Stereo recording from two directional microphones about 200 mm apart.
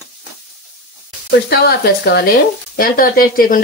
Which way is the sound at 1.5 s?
55° left (ahead or behind).